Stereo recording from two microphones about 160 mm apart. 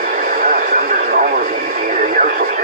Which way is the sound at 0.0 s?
65° right (ahead or behind).